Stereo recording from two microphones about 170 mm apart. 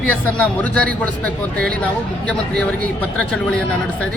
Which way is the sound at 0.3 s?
10° left (ahead or behind).